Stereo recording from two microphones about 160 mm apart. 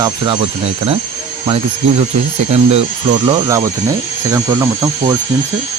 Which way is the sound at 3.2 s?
25° right (ahead or behind).